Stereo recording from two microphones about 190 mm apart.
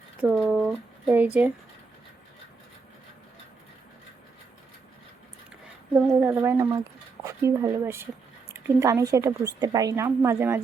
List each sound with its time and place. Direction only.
0.2 s speech: 5° right (ahead or behind)
6.1 s a woman's voice: 10° right (ahead or behind)